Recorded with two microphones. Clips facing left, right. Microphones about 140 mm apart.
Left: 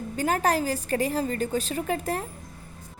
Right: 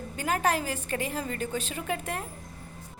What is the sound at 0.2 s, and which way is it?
A woman's voice, 40° left (ahead or behind).